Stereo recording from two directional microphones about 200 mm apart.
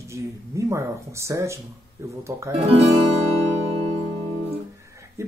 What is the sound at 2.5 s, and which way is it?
Speech, 30° right (ahead or behind).